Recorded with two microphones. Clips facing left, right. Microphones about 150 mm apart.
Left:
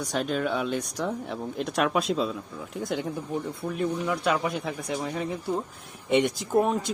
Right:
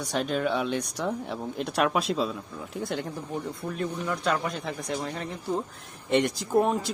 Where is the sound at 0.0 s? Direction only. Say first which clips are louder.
Even; centre (ahead or behind).